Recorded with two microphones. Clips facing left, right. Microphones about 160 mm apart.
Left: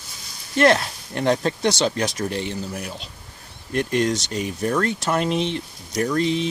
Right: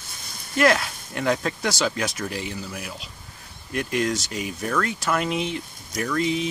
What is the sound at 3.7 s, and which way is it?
Speech, 35° left (ahead or behind).